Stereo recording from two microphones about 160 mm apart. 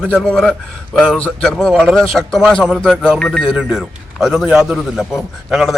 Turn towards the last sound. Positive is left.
turn(degrees=0)  # may be behind; listen again after turning